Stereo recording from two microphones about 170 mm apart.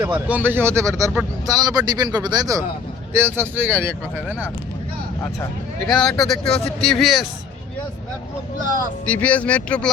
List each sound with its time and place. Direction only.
0.3 s speech: 10° right (ahead or behind)
5.9 s speech: 5° left (ahead or behind)
9.0 s speech: 10° left (ahead or behind)